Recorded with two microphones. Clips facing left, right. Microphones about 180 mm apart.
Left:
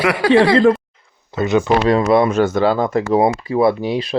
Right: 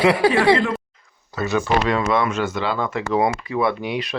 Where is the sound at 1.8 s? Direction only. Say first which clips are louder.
Left 6 dB; 35° left (ahead or behind).